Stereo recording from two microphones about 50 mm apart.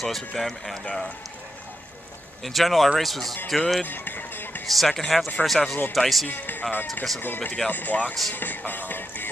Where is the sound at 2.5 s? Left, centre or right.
Centre.